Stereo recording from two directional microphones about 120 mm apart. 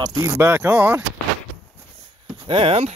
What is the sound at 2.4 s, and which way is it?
Speech, 50° right (ahead or behind).